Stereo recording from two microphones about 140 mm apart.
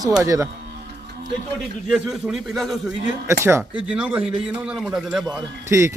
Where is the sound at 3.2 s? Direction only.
20° right (ahead or behind).